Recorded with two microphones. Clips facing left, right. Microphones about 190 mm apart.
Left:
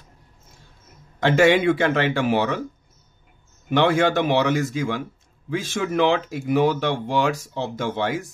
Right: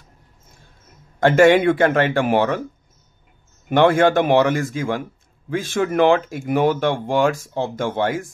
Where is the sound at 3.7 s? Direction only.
50° right (ahead or behind).